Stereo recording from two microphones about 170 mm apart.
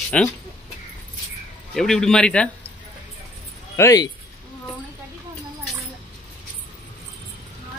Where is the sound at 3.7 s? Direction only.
20° left (ahead or behind).